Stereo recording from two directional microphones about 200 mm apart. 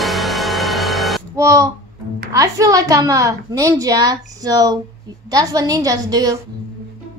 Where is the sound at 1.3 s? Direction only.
15° right (ahead or behind).